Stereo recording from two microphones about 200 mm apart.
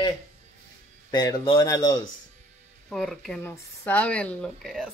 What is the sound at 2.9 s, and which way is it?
Speech, centre (ahead or behind).